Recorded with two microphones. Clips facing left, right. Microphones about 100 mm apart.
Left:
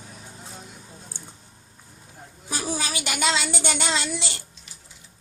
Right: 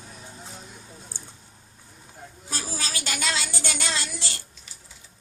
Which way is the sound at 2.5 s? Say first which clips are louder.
Left 5 dB; 15° left (ahead or behind).